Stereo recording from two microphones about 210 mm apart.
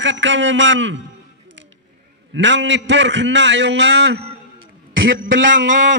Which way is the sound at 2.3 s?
60° right (ahead or behind).